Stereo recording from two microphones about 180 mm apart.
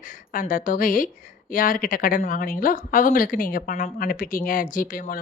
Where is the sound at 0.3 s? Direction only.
50° left (ahead or behind).